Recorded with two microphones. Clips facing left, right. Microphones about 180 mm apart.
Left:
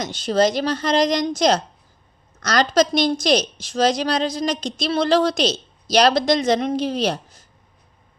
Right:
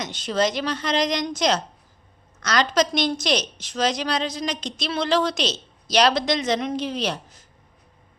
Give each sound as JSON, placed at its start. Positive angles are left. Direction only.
{"t": 0.3, "sound": "a woman's voice", "side_deg": 35}